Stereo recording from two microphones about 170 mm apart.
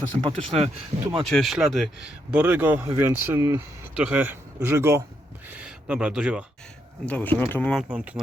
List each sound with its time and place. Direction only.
0.3 s speech: 35° right (ahead or behind)
1.1 s speech: centre (ahead or behind)
7.0 s speech: 10° left (ahead or behind)
7.8 s speech: 10° right (ahead or behind)